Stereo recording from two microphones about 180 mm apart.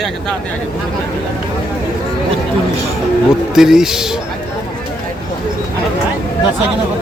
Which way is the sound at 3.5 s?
Centre (ahead or behind).